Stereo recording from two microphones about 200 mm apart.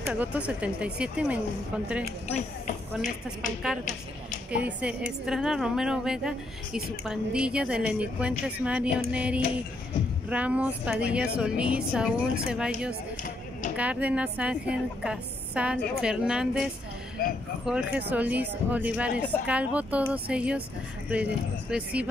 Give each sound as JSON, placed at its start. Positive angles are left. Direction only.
{"t": 0.1, "sound": "a woman's voice", "side_deg": -5}
{"t": 2.2, "sound": "speech", "side_deg": 35}
{"t": 5.2, "sound": "a woman's voice", "side_deg": 0}
{"t": 17.2, "sound": "speech", "side_deg": 45}
{"t": 17.6, "sound": "a woman's voice", "side_deg": -5}